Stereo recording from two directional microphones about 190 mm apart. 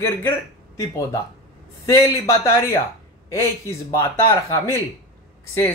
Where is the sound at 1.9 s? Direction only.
15° left (ahead or behind).